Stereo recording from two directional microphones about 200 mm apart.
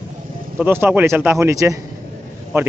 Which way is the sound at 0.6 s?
10° right (ahead or behind).